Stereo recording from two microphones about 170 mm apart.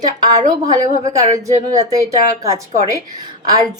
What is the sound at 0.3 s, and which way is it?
Speech, 45° right (ahead or behind).